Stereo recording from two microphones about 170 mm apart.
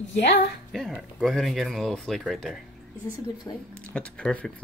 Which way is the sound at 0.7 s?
Centre (ahead or behind).